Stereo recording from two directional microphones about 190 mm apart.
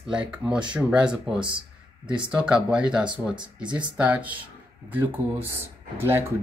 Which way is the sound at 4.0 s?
10° right (ahead or behind).